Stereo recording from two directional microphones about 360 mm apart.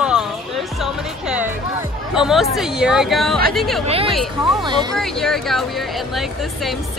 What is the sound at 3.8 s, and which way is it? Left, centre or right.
Speech, centre.